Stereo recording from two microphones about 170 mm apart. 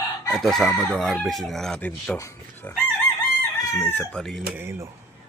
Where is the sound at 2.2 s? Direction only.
15° left (ahead or behind).